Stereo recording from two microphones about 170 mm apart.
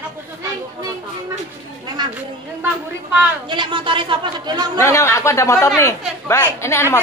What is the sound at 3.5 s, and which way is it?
Speech, 30° right (ahead or behind).